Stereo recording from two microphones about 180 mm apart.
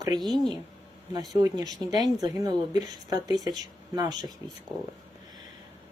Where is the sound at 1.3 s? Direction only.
20° right (ahead or behind).